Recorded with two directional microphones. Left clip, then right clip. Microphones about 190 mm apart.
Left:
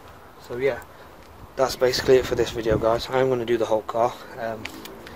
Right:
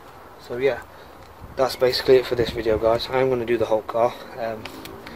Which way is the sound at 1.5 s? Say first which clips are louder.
Right 1 dB; 20° left (ahead or behind).